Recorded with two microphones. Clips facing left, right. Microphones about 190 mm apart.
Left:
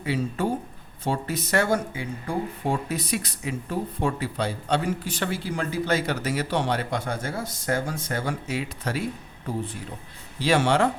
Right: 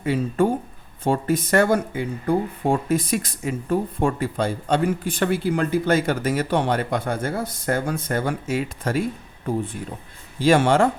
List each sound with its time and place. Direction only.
0.0 s speech: 50° right (ahead or behind)
10.4 s speech: 50° right (ahead or behind)